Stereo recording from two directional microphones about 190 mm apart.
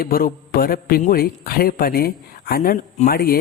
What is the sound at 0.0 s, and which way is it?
A man's voice, 50° left (ahead or behind).